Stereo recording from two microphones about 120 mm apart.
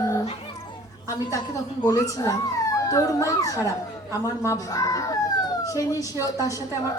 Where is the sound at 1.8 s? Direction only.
30° left (ahead or behind).